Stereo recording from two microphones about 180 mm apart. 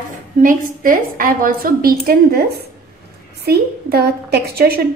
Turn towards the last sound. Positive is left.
turn(degrees=-60)  # may be behind; listen again after turning